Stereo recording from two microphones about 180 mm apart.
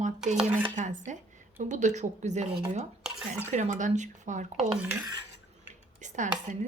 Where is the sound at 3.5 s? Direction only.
45° right (ahead or behind).